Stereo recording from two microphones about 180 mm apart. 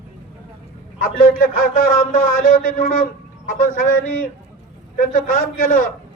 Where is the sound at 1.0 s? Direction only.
50° left (ahead or behind).